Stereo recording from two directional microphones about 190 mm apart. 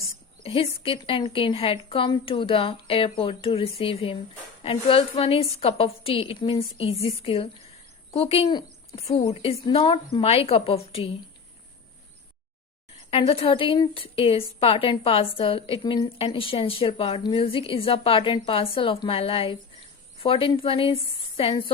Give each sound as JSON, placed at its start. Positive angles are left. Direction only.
{"t": 0.0, "sound": "a woman's voice", "side_deg": 30}
{"t": 13.1, "sound": "a woman's voice", "side_deg": 30}